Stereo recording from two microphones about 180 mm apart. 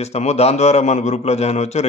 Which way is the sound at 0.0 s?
35° left (ahead or behind).